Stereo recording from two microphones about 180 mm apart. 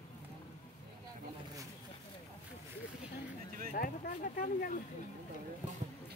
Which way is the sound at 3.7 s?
50° left (ahead or behind).